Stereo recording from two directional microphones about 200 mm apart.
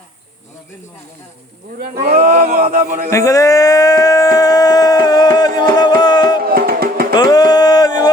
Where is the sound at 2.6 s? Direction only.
35° right (ahead or behind).